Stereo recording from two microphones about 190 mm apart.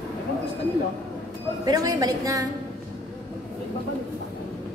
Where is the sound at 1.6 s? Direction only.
20° right (ahead or behind).